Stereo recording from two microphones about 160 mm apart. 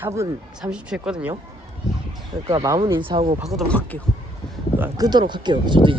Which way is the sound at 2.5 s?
25° right (ahead or behind).